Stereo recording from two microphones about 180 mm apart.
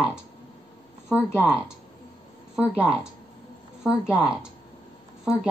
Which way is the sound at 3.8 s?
5° right (ahead or behind).